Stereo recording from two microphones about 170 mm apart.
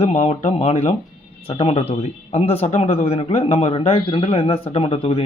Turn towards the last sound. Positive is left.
turn(degrees=35)  # may be behind; listen again after turning